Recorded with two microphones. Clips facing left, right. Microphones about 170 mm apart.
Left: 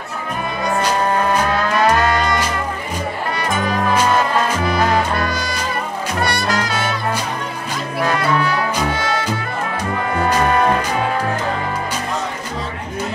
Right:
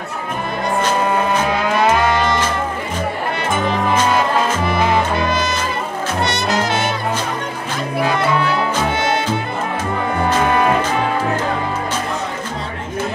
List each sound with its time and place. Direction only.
1.6 s music: 20° right (ahead or behind)
4.6 s music: 20° right (ahead or behind)
8.9 s music: 25° right (ahead or behind)